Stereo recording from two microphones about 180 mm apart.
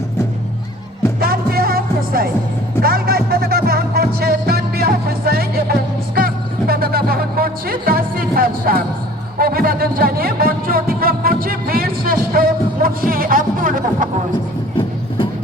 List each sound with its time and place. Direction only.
1.2 s music: 55° right (ahead or behind)